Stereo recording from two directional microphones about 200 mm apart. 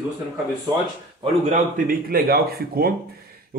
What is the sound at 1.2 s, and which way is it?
Speech, 35° right (ahead or behind).